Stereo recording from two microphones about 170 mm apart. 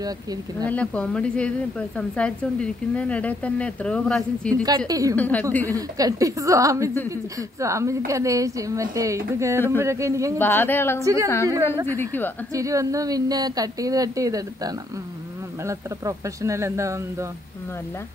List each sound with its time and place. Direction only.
0.7 s a woman's voice: 5° left (ahead or behind)
4.6 s a woman's voice: 20° right (ahead or behind)
5.1 s a woman's voice: 10° left (ahead or behind)
5.7 s a woman's voice: 20° right (ahead or behind)
10.4 s a woman's voice: 10° left (ahead or behind)
12.5 s a woman's voice: 20° right (ahead or behind)